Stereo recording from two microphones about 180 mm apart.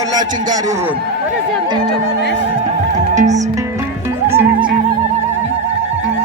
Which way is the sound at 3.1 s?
40° right (ahead or behind).